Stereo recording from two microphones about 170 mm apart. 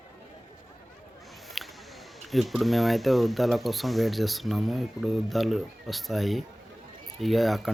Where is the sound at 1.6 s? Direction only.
Centre (ahead or behind).